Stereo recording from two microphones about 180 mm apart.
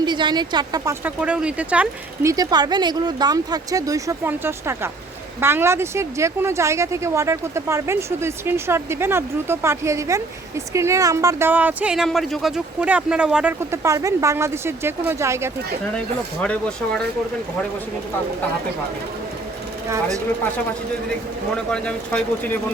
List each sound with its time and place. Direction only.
0.0 s speech: 25° right (ahead or behind)
1.0 s speech: 5° right (ahead or behind)
2.3 s speech: 20° right (ahead or behind)
16.4 s speech: 5° left (ahead or behind)
19.9 s speech: 15° right (ahead or behind)
21.5 s speech: 5° left (ahead or behind)